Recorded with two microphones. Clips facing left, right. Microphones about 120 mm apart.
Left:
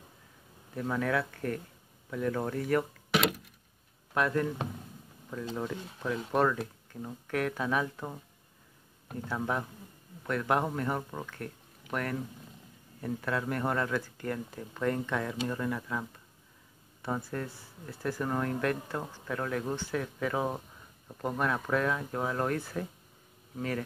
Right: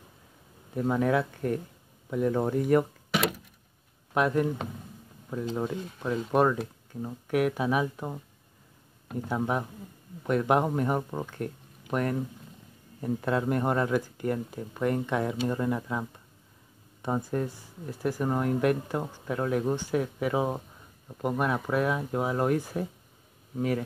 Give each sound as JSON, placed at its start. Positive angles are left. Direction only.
{"t": 0.7, "sound": "speech", "side_deg": -20}
{"t": 4.1, "sound": "speech", "side_deg": -20}